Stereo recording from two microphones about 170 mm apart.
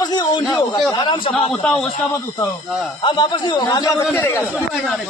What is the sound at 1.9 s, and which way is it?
A man's voice, 30° left (ahead or behind).